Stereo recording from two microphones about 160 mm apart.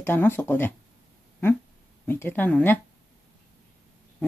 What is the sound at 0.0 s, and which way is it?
Speech, 15° left (ahead or behind).